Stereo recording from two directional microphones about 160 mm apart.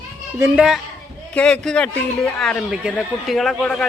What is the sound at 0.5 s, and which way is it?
A man's voice, 5° right (ahead or behind).